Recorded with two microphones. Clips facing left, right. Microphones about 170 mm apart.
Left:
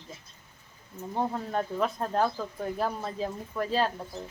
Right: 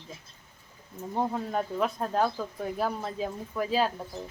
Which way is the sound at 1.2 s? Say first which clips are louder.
Right 1 dB; 5° right (ahead or behind).